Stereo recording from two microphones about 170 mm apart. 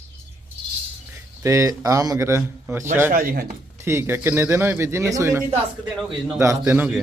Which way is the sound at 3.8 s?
15° right (ahead or behind).